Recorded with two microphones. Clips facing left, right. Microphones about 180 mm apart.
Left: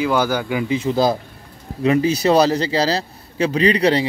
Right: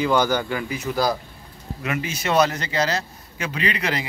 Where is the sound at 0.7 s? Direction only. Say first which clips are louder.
Left 7 dB; 25° left (ahead or behind).